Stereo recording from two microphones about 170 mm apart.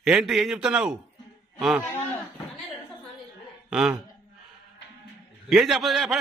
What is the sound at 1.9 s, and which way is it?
Speech, 10° left (ahead or behind).